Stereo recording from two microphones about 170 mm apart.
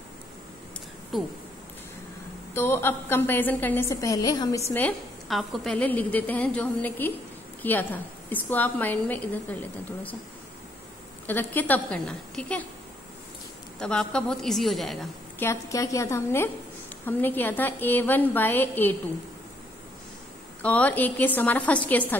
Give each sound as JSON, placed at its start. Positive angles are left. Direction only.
{"t": 1.1, "sound": "a woman's voice", "side_deg": 0}
{"t": 2.5, "sound": "a woman's voice", "side_deg": 15}
{"t": 5.3, "sound": "a woman's voice", "side_deg": 0}
{"t": 11.2, "sound": "a woman's voice", "side_deg": 10}
{"t": 13.7, "sound": "a woman's voice", "side_deg": 5}
{"t": 15.3, "sound": "a woman's voice", "side_deg": 15}
{"t": 20.6, "sound": "a woman's voice", "side_deg": 10}